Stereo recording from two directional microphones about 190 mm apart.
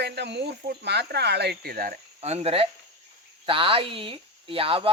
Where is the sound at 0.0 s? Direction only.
65° right (ahead or behind).